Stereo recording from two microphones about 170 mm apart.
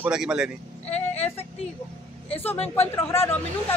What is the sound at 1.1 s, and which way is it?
Speech, 40° left (ahead or behind).